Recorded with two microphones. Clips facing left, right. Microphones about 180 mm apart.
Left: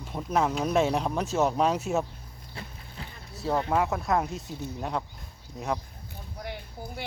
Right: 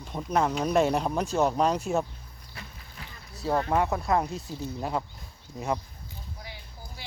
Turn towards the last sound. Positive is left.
turn(degrees=60)  # may be behind; listen again after turning